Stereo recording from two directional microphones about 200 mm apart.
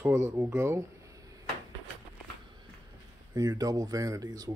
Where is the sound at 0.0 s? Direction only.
15° right (ahead or behind).